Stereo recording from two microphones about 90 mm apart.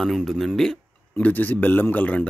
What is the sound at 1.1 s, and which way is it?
Speech, 20° left (ahead or behind).